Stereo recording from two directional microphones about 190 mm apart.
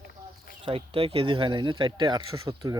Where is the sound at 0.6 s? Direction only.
30° right (ahead or behind).